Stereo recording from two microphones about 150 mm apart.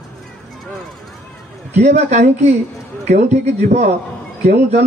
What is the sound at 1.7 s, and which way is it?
A man's voice, 50° right (ahead or behind).